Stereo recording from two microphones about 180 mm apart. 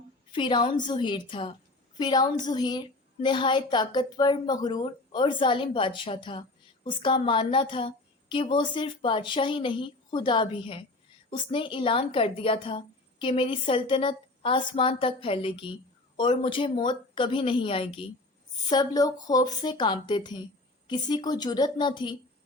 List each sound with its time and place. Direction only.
0.3 s a woman's voice: 25° left (ahead or behind)